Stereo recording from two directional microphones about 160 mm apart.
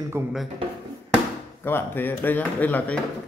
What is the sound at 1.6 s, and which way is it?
A man's voice, 15° left (ahead or behind).